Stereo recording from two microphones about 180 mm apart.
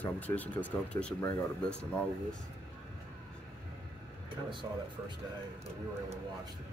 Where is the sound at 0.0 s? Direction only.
10° left (ahead or behind).